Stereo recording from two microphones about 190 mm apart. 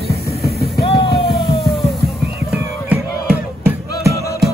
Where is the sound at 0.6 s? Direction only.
30° left (ahead or behind).